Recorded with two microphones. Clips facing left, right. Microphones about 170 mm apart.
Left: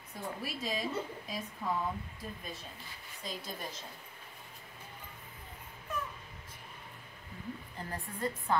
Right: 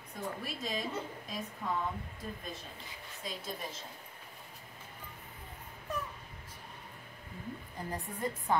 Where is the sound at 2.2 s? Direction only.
5° left (ahead or behind).